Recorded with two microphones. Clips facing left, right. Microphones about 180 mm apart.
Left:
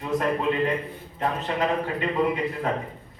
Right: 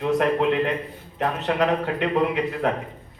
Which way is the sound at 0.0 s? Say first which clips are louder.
Right 4 dB; 70° right (ahead or behind).